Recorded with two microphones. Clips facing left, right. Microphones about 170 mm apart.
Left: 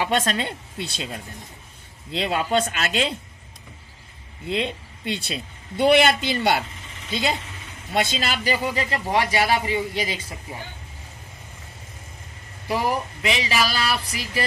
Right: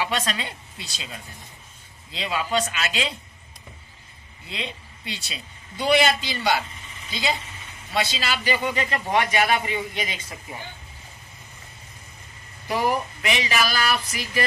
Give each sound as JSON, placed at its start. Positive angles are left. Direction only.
{"t": 0.0, "sound": "a woman's voice", "side_deg": 50}
{"t": 4.5, "sound": "a woman's voice", "side_deg": 55}
{"t": 8.7, "sound": "speech", "side_deg": 30}
{"t": 13.2, "sound": "speech", "side_deg": 30}